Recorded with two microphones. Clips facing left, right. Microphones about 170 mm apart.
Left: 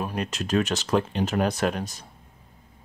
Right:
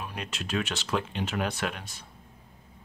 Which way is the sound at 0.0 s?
45° left (ahead or behind).